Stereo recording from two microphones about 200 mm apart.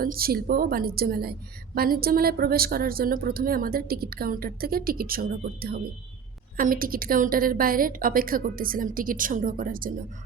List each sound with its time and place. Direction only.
0.0 s a woman's voice: 50° right (ahead or behind)